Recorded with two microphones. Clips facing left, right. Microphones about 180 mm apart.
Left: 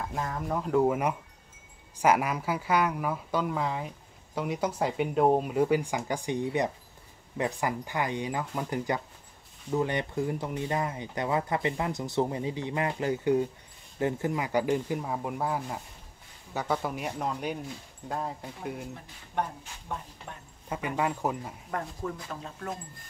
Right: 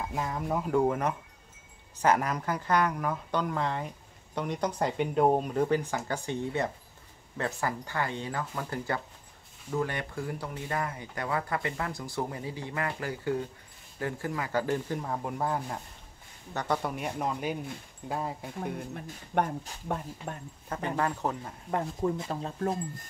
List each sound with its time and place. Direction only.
0.0 s speech: 5° right (ahead or behind)
19.3 s speech: 60° right (ahead or behind)
20.3 s speech: 45° right (ahead or behind)
20.6 s speech: 10° left (ahead or behind)
21.6 s speech: 25° right (ahead or behind)